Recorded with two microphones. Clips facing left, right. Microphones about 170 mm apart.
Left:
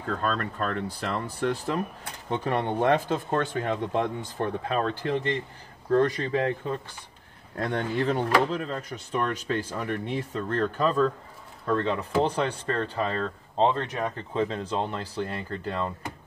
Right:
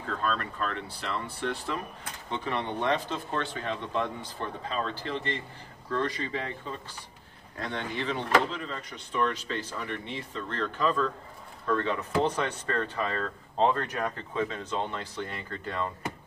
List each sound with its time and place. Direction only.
0.2 s speech: 45° left (ahead or behind)
11.6 s speech: 35° left (ahead or behind)